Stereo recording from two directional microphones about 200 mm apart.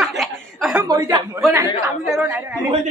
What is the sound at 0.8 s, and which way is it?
Speech, 20° right (ahead or behind).